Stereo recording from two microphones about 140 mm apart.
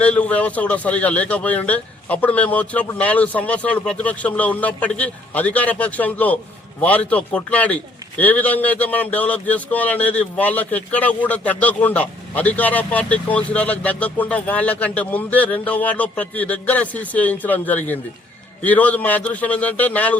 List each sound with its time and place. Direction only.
0.0 s a man's voice: 10° left (ahead or behind)